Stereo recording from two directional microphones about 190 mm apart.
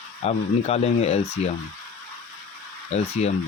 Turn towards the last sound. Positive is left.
turn(degrees=35)  # may be behind; listen again after turning